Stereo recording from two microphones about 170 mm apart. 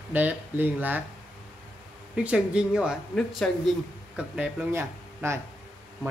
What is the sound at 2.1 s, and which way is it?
Speech, 5° right (ahead or behind).